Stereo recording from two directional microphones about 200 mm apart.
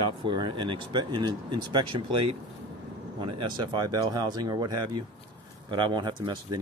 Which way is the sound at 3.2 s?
25° right (ahead or behind).